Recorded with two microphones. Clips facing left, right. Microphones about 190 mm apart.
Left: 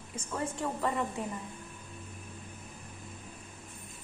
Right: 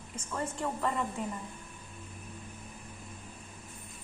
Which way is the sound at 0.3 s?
10° left (ahead or behind).